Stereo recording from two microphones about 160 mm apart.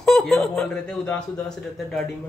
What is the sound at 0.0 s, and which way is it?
Speech, centre (ahead or behind).